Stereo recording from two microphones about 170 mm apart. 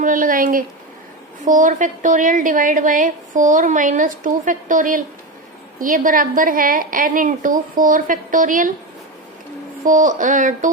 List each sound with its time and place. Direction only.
0.0 s a woman's voice: 50° right (ahead or behind)
9.8 s a woman's voice: 50° right (ahead or behind)